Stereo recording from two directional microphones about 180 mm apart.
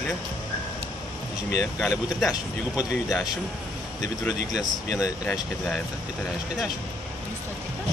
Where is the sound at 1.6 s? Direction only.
15° left (ahead or behind).